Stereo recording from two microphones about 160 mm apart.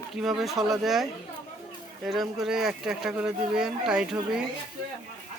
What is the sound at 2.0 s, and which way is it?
Speech, centre (ahead or behind).